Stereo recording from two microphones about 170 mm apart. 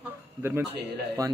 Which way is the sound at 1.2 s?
20° right (ahead or behind).